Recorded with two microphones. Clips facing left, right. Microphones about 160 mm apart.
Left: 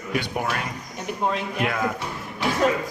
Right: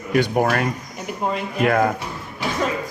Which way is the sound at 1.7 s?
55° right (ahead or behind).